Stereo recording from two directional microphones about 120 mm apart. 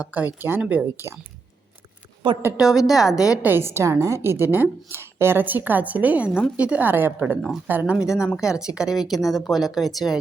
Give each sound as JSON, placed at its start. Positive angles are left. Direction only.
{"t": 0.0, "sound": "a woman's voice", "side_deg": -15}
{"t": 2.2, "sound": "a woman's voice", "side_deg": -45}
{"t": 2.6, "sound": "speech", "side_deg": -5}
{"t": 3.3, "sound": "a woman's voice", "side_deg": -15}